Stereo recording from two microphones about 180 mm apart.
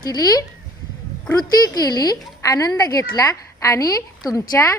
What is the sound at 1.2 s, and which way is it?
A woman's voice, 20° left (ahead or behind).